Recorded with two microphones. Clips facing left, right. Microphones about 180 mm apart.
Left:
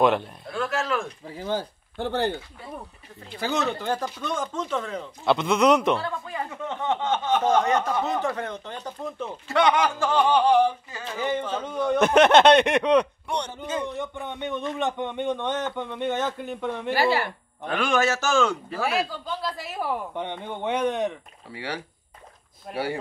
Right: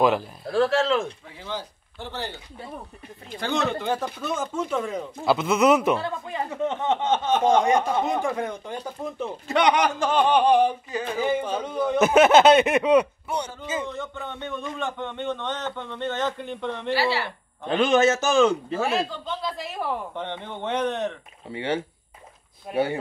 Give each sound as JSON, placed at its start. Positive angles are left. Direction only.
{"t": 0.0, "sound": "speech", "side_deg": 0}
{"t": 0.5, "sound": "speech", "side_deg": -30}
{"t": 1.2, "sound": "speech", "side_deg": 40}
{"t": 3.3, "sound": "speech", "side_deg": 5}
{"t": 5.9, "sound": "speech", "side_deg": -20}
{"t": 13.8, "sound": "a man's voice", "side_deg": 15}
{"t": 16.9, "sound": "speech", "side_deg": 50}
{"t": 17.6, "sound": "speech", "side_deg": -20}
{"t": 19.0, "sound": "a man's voice", "side_deg": 5}
{"t": 21.5, "sound": "speech", "side_deg": -25}